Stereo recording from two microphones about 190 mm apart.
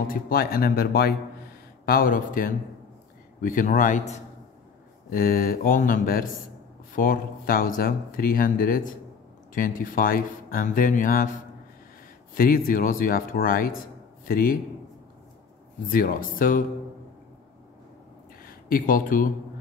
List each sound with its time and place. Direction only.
0.1 s speech: 50° left (ahead or behind)
15.9 s speech: 45° left (ahead or behind)
18.4 s a sound: 50° left (ahead or behind)